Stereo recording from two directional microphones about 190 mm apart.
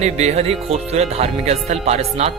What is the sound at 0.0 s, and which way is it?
Speech, 35° right (ahead or behind).